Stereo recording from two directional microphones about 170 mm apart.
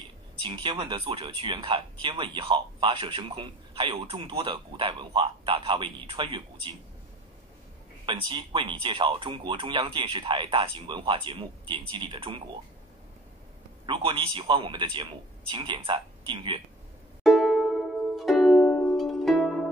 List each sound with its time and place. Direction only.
0.4 s speech: 30° right (ahead or behind)
8.0 s speech: 30° right (ahead or behind)
13.8 s speech: 30° right (ahead or behind)
17.2 s music: centre (ahead or behind)